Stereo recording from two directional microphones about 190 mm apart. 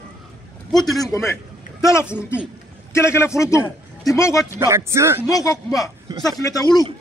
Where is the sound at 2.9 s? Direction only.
15° left (ahead or behind).